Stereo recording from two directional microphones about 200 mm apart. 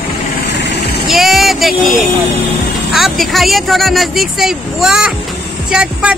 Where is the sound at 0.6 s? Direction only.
60° left (ahead or behind).